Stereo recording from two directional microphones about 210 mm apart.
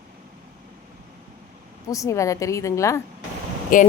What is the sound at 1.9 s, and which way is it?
Speech, 15° left (ahead or behind).